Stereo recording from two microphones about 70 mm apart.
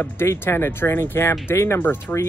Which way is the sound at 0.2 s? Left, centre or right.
Left.